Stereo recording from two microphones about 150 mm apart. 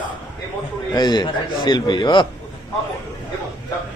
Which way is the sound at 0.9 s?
30° left (ahead or behind).